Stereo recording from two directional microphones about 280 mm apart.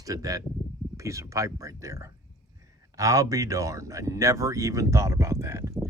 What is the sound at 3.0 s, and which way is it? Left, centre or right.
Speech, centre.